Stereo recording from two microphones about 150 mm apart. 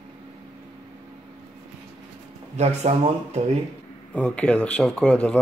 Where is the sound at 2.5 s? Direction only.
45° right (ahead or behind).